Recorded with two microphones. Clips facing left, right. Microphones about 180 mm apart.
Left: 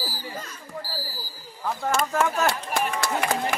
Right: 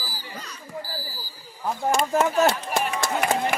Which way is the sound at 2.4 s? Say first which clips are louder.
Right 3 dB; 20° right (ahead or behind).